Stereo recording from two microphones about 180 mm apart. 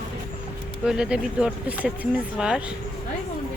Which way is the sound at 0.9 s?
5° right (ahead or behind).